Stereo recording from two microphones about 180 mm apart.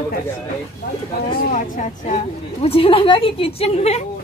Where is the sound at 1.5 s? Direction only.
45° left (ahead or behind).